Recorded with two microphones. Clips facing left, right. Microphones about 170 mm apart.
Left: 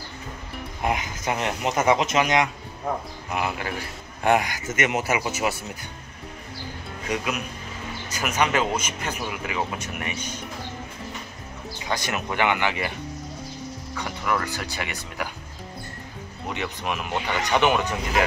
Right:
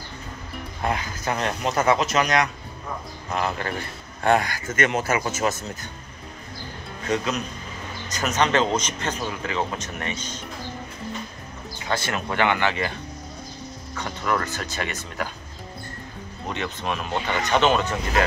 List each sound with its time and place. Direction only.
0.8 s speech: 20° left (ahead or behind)
3.3 s a man's voice: 10° left (ahead or behind)
7.1 s a man's voice: 10° left (ahead or behind)
11.8 s a man's voice: 15° left (ahead or behind)
16.4 s a man's voice: 15° left (ahead or behind)